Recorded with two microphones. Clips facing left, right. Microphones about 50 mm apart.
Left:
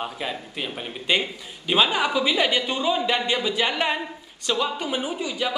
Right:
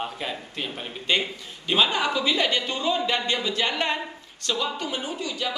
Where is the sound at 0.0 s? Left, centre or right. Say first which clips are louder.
Left 1 dB; centre.